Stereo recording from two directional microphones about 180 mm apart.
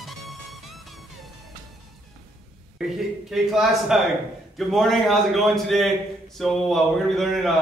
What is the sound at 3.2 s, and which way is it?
A man's voice, centre (ahead or behind).